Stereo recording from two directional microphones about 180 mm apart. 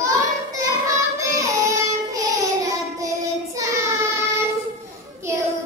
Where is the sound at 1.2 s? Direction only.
15° right (ahead or behind).